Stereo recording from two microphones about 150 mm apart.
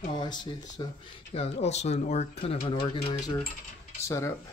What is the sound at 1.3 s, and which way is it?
Speech, 45° left (ahead or behind).